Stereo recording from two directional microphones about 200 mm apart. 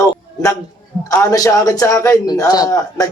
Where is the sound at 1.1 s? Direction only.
15° left (ahead or behind).